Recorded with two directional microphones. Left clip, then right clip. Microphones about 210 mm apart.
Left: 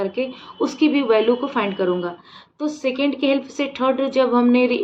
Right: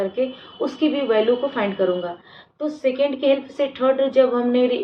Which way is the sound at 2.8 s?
60° left (ahead or behind).